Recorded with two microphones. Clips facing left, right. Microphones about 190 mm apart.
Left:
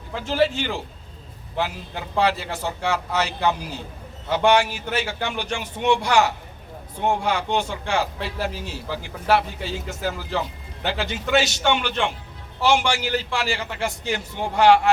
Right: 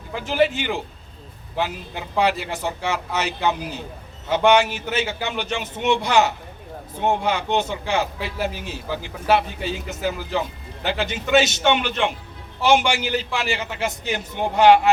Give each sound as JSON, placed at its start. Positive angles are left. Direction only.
{"t": 0.2, "sound": "a man's voice", "side_deg": -15}
{"t": 2.1, "sound": "a man's voice", "side_deg": -15}